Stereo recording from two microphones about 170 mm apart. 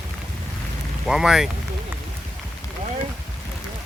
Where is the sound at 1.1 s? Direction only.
5° right (ahead or behind).